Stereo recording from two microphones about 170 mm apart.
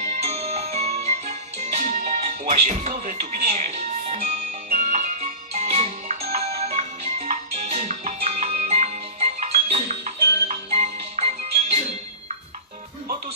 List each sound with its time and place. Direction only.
0.3 s music: 40° right (ahead or behind)
4.6 s music: 55° right (ahead or behind)